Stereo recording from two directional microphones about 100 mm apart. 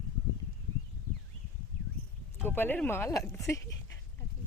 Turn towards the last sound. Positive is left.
turn(degrees=35)  # may be behind; listen again after turning